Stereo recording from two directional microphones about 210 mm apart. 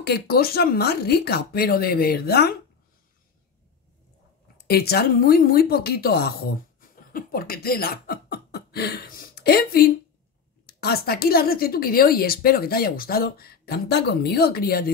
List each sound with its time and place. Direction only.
0.0 s a woman's voice: 50° left (ahead or behind)
4.6 s a woman's voice: 50° left (ahead or behind)